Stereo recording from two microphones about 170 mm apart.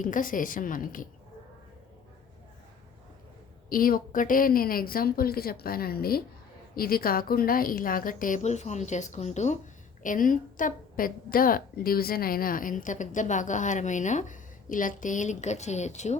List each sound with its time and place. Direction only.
0.0 s a woman's voice: 50° left (ahead or behind)
3.7 s a woman's voice: 55° left (ahead or behind)